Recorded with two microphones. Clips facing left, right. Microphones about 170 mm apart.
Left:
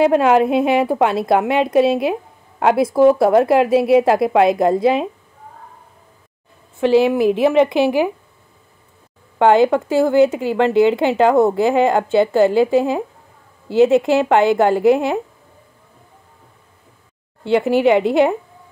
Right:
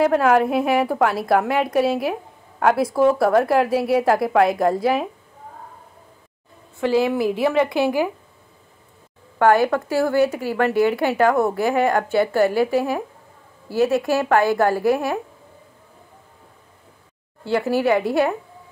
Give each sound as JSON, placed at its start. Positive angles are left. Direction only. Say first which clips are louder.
{"t": 0.0, "sound": "a woman's voice", "louder": "left 3 dB", "side_deg": 20}
{"t": 6.8, "sound": "a woman's voice", "louder": "left 5 dB", "side_deg": 20}
{"t": 9.4, "sound": "a woman's voice", "louder": "left 4 dB", "side_deg": 20}
{"t": 17.5, "sound": "a woman's voice", "louder": "left 5 dB", "side_deg": 20}